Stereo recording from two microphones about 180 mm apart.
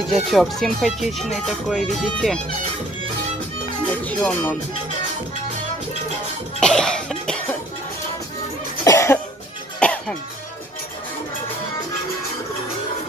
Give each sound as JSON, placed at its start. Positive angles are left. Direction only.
{"t": 0.1, "sound": "speech", "side_deg": 0}
{"t": 3.8, "sound": "speech", "side_deg": 5}
{"t": 6.6, "sound": "cough", "side_deg": 5}
{"t": 8.8, "sound": "cough", "side_deg": 15}
{"t": 9.8, "sound": "cough", "side_deg": 5}